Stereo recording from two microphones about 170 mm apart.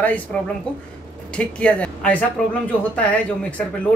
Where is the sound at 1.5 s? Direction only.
5° left (ahead or behind).